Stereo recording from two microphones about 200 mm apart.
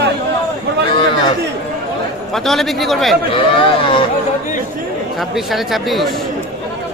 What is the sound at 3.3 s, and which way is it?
Speech, 25° left (ahead or behind).